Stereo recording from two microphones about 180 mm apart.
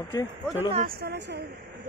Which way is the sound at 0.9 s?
60° right (ahead or behind).